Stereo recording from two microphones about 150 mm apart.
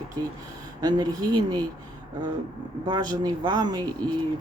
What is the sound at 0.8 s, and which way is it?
Speech, 25° right (ahead or behind).